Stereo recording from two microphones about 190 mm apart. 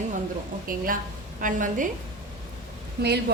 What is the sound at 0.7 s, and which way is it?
A woman's voice, 50° right (ahead or behind).